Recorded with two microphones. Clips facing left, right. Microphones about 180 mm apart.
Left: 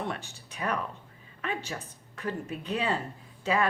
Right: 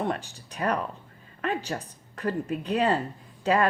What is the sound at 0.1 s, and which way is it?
A woman's voice, 40° right (ahead or behind).